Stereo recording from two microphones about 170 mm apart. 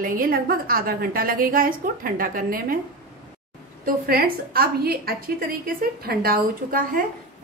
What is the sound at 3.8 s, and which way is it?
A woman's voice, 60° right (ahead or behind).